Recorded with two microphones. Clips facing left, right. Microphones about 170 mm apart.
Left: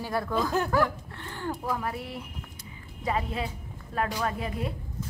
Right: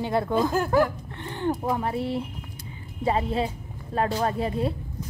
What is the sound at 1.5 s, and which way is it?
A woman's voice, 25° right (ahead or behind).